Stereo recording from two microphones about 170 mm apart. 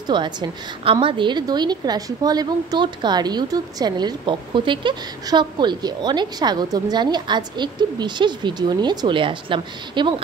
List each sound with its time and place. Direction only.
0.1 s a woman's voice: 25° right (ahead or behind)